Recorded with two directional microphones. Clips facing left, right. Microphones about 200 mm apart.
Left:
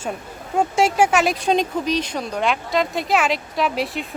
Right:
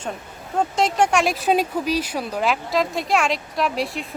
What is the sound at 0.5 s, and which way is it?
Speech, 10° left (ahead or behind).